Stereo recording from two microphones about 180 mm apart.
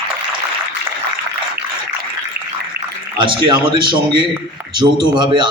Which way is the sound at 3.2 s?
25° right (ahead or behind).